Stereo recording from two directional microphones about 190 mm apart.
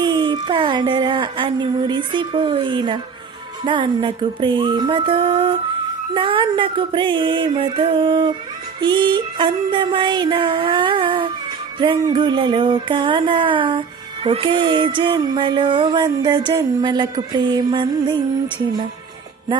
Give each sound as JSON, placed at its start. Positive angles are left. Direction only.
{"t": 0.0, "sound": "music", "side_deg": -25}